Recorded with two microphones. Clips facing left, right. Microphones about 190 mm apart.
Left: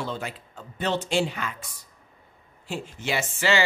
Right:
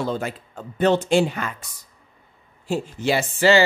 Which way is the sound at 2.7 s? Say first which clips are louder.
Right 7 dB; 35° right (ahead or behind).